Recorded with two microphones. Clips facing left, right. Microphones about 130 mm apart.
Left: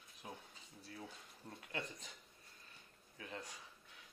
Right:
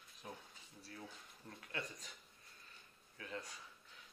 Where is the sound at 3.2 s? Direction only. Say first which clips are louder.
Right 1 dB; 15° left (ahead or behind).